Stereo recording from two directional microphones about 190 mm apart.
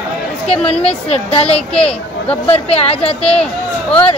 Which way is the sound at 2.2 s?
30° left (ahead or behind).